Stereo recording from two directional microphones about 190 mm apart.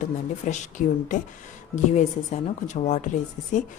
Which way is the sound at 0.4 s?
40° left (ahead or behind).